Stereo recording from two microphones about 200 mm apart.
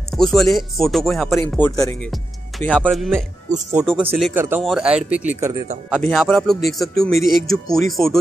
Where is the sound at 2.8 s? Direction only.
Centre (ahead or behind).